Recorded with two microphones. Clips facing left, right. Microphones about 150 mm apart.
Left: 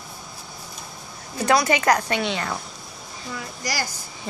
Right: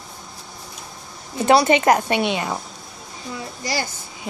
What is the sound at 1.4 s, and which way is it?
A woman's voice, 25° right (ahead or behind).